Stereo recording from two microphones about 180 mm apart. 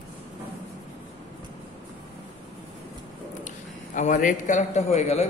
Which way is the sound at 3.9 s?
45° left (ahead or behind).